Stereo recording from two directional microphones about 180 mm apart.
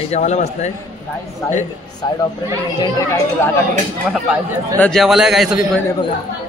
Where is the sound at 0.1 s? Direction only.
40° left (ahead or behind).